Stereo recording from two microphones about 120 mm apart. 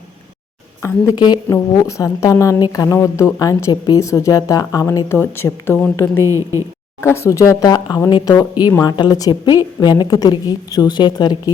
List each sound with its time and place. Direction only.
1.1 s a woman's voice: 35° left (ahead or behind); by 5.8 s 20° left (ahead or behind)
6.2 s a woman's voice: 25° right (ahead or behind)
7.0 s a woman's voice: 20° left (ahead or behind)